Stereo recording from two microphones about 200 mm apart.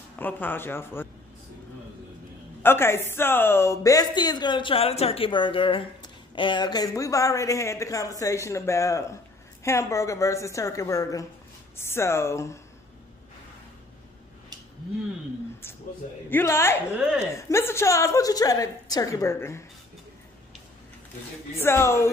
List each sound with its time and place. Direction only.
0.1 s speech: 10° left (ahead or behind)
2.6 s a woman's voice: 10° left (ahead or behind)
16.3 s speech: 10° left (ahead or behind)
16.9 s speech: 5° right (ahead or behind)
17.4 s speech: 15° left (ahead or behind)
21.5 s speech: 10° left (ahead or behind)